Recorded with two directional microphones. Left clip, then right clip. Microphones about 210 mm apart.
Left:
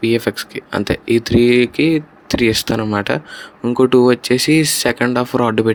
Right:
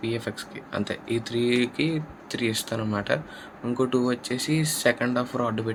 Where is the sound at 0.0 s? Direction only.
40° left (ahead or behind).